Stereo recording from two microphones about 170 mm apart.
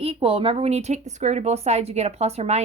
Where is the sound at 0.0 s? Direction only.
35° right (ahead or behind).